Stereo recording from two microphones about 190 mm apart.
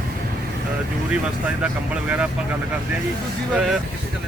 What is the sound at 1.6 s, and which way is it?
Speech, 5° right (ahead or behind).